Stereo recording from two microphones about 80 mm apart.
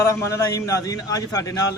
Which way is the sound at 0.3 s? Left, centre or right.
Left.